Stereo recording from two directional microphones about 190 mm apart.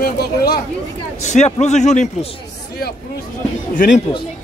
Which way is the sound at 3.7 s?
45° left (ahead or behind).